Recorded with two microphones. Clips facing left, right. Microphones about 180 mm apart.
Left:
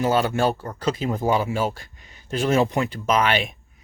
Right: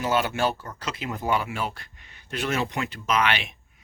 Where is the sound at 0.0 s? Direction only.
35° left (ahead or behind).